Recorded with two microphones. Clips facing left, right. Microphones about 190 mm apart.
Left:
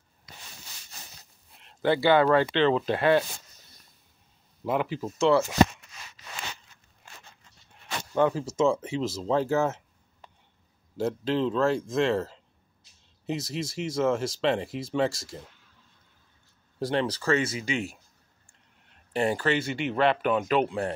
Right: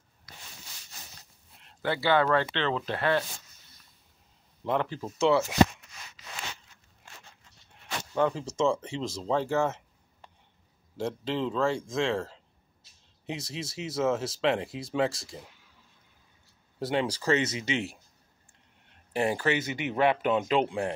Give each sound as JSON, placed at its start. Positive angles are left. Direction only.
{"t": 1.8, "sound": "speech", "side_deg": 20}
{"t": 4.6, "sound": "speech", "side_deg": 10}
{"t": 8.1, "sound": "speech", "side_deg": 5}
{"t": 11.0, "sound": "speech", "side_deg": 0}
{"t": 16.8, "sound": "speech", "side_deg": -10}
{"t": 19.1, "sound": "speech", "side_deg": -10}